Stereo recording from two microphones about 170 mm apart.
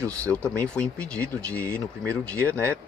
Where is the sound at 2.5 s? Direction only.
15° right (ahead or behind).